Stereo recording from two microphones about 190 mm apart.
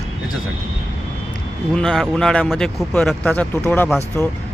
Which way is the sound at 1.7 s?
5° left (ahead or behind).